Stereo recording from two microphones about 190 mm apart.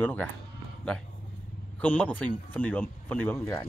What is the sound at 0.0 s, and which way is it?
Speech, 10° left (ahead or behind).